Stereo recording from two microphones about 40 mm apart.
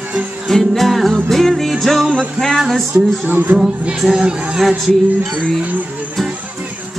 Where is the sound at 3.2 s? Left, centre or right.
Right.